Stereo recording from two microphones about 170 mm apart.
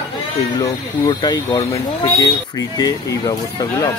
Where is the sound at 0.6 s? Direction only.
25° left (ahead or behind).